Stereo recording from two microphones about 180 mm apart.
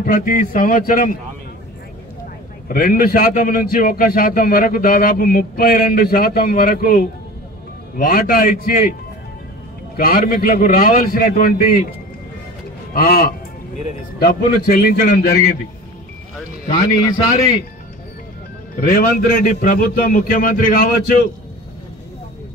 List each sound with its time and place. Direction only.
0.0 s a man's voice: 50° left (ahead or behind)
2.7 s a man's voice: 55° left (ahead or behind)
9.9 s a man's voice: 55° left (ahead or behind)
12.9 s a man's voice: 55° left (ahead or behind)
16.6 s a man's voice: 20° left (ahead or behind)
18.9 s a man's voice: 55° left (ahead or behind)